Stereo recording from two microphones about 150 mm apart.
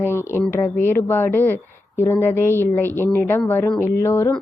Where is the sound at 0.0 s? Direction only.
15° left (ahead or behind).